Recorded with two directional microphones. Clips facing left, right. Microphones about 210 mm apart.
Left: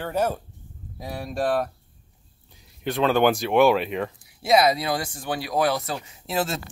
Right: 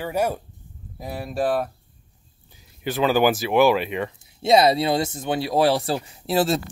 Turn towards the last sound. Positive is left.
turn(degrees=-35)  # may be behind; listen again after turning